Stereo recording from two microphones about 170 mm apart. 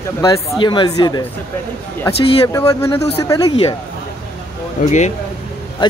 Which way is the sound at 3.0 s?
35° left (ahead or behind).